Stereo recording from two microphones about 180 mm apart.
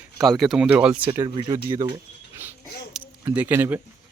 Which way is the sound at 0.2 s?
Centre (ahead or behind).